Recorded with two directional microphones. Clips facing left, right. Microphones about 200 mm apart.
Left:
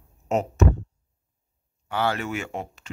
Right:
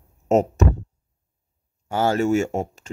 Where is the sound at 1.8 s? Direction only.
45° right (ahead or behind).